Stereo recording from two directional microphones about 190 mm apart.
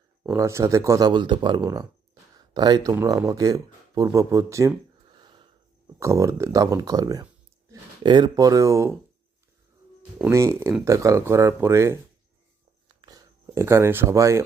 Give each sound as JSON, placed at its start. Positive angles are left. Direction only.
{"t": 0.2, "sound": "speech", "side_deg": -10}
{"t": 5.2, "sound": "sniff", "side_deg": -25}
{"t": 6.0, "sound": "speech", "side_deg": -15}
{"t": 10.2, "sound": "speech", "side_deg": -10}
{"t": 13.0, "sound": "a sound", "side_deg": -20}